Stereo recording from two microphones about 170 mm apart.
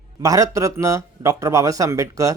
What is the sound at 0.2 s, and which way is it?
Speech, 20° right (ahead or behind).